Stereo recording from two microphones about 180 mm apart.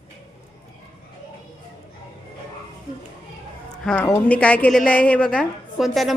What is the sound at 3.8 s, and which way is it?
A woman's voice, 5° left (ahead or behind).